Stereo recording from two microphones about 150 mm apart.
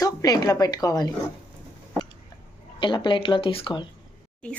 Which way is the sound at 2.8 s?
30° left (ahead or behind).